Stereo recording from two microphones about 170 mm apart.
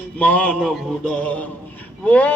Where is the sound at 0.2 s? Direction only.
10° left (ahead or behind).